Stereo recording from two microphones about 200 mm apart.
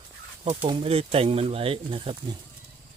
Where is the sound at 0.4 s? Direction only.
25° right (ahead or behind).